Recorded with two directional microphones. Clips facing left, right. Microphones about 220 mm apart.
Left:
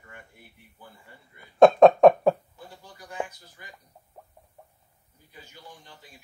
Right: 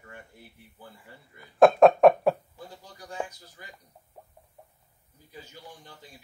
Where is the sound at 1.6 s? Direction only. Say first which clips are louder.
Left 2 dB; centre (ahead or behind).